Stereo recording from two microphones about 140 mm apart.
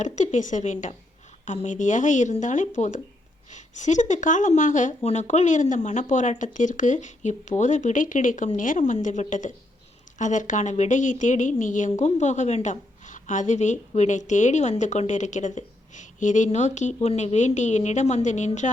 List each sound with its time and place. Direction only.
0.0 s a woman's voice: 60° left (ahead or behind)